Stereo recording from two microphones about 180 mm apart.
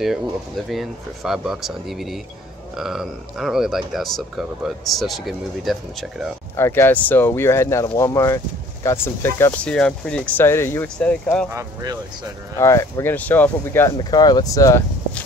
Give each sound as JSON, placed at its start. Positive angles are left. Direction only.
{"t": 0.0, "sound": "speech", "side_deg": 0}
{"t": 6.5, "sound": "speech", "side_deg": 15}
{"t": 11.5, "sound": "speech", "side_deg": -20}
{"t": 12.5, "sound": "speech", "side_deg": 15}
{"t": 13.9, "sound": "speech", "side_deg": 25}